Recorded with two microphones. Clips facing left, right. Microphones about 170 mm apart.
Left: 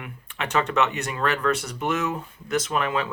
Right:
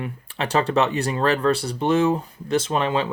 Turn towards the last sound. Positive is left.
turn(degrees=-30)  # may be behind; listen again after turning